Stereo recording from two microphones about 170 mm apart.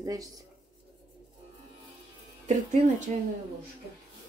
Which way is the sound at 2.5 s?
45° right (ahead or behind).